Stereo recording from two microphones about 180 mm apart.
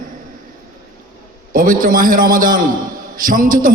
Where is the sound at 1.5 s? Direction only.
50° right (ahead or behind).